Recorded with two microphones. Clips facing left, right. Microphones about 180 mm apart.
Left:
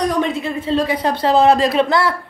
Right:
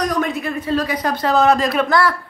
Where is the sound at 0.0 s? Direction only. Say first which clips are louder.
Left 2 dB; 25° left (ahead or behind).